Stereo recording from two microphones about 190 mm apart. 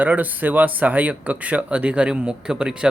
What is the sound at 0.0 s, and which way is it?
Speech, 10° right (ahead or behind).